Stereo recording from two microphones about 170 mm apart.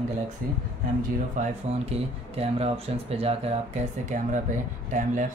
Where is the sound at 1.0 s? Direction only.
45° right (ahead or behind).